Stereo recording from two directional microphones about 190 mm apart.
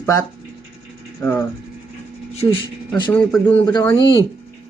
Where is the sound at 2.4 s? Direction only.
30° left (ahead or behind).